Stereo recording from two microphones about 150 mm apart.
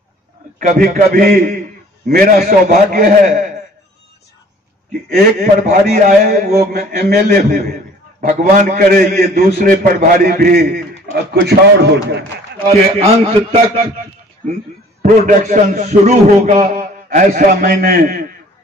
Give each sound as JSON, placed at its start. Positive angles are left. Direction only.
{"t": 0.6, "sound": "a man's voice", "side_deg": -60}
{"t": 5.1, "sound": "a man's voice", "side_deg": -60}
{"t": 12.6, "sound": "a man's voice", "side_deg": -35}
{"t": 15.0, "sound": "a man's voice", "side_deg": -55}